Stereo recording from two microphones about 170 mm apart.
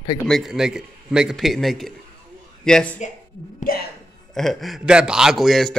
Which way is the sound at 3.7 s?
60° left (ahead or behind).